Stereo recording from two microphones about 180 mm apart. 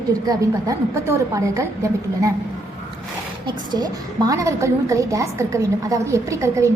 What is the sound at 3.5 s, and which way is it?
A woman's voice, 20° right (ahead or behind).